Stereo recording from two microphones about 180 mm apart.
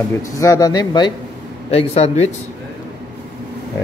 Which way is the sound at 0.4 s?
20° left (ahead or behind).